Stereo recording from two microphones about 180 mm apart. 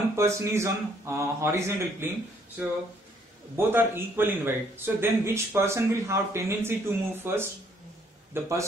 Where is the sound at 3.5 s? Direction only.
10° right (ahead or behind).